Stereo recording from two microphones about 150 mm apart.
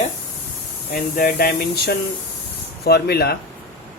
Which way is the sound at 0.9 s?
90° left.